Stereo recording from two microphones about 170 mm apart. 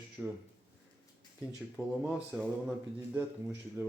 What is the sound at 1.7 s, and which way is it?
Speech, 5° right (ahead or behind).